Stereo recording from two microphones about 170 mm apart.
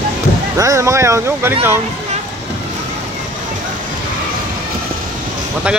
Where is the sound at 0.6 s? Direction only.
20° right (ahead or behind).